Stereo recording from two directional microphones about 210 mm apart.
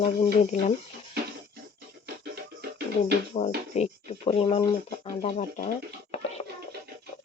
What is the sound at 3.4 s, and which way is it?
Speech, 30° left (ahead or behind).